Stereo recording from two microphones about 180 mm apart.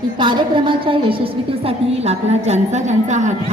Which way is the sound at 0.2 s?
25° right (ahead or behind).